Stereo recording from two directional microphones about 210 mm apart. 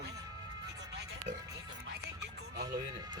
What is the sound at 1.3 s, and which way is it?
Speech, 35° right (ahead or behind).